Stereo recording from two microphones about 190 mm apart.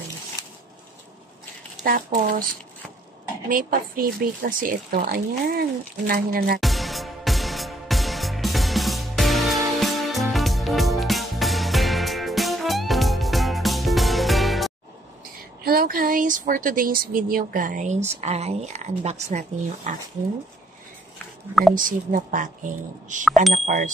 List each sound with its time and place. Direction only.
1.8 s speech: 45° right (ahead or behind)
3.4 s speech: 45° right (ahead or behind)
6.6 s music: centre (ahead or behind)
15.6 s speech: 50° right (ahead or behind)
21.7 s speech: 45° right (ahead or behind)